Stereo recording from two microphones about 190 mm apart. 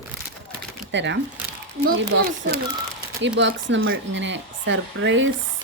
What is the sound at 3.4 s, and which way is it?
Speech, 70° right (ahead or behind).